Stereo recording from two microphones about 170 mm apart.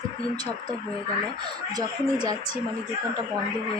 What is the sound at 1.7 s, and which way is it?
Speech, 20° right (ahead or behind).